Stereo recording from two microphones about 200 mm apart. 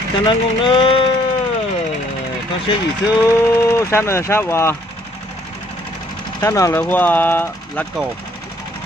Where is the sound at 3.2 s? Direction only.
15° left (ahead or behind).